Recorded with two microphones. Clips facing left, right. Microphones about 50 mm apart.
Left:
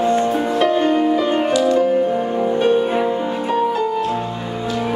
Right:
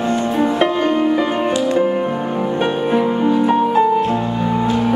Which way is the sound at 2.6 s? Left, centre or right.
Right.